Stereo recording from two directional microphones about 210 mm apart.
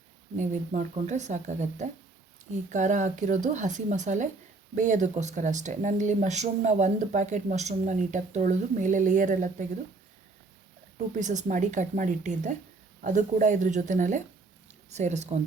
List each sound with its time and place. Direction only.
0.3 s speech: 35° right (ahead or behind)
10.9 s speech: 35° right (ahead or behind)